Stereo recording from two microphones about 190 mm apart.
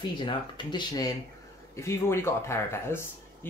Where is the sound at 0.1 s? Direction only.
25° left (ahead or behind).